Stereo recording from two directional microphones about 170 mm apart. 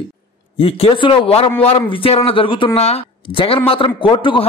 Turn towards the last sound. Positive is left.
turn(degrees=30)  # may be behind; listen again after turning